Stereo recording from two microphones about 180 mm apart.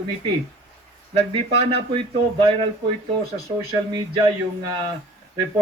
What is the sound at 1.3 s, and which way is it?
Speech, 30° right (ahead or behind).